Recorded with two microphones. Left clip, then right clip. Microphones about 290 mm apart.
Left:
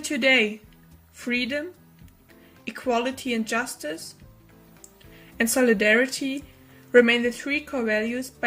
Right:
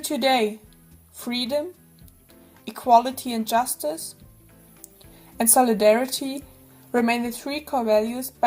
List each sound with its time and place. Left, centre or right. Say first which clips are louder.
0.2 s speech: left 1 dB; centre
2.6 s speech: right 8 dB; centre
5.1 s speech: right 4 dB; centre